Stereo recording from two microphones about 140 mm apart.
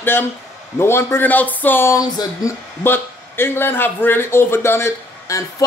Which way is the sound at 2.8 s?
15° left (ahead or behind).